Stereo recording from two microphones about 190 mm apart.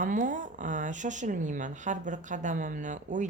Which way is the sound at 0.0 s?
45° right (ahead or behind).